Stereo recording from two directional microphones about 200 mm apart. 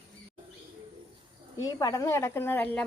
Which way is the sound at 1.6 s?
15° left (ahead or behind).